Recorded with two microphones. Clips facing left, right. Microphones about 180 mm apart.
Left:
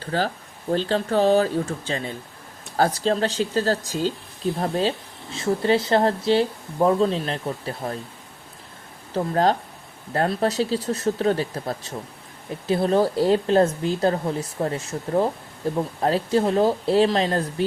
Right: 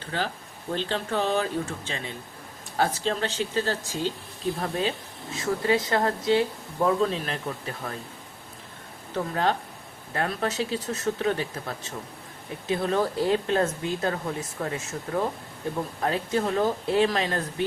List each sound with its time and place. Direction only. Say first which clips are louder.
0.0 s speech: left 6 dB; 40° left (ahead or behind)
9.1 s speech: left 5 dB; 35° left (ahead or behind)